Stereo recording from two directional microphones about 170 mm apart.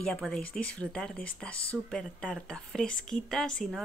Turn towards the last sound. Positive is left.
turn(degrees=5)  # may be behind; listen again after turning